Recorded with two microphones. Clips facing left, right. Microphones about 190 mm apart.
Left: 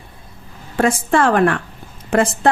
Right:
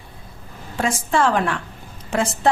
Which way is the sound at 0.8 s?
55° left (ahead or behind).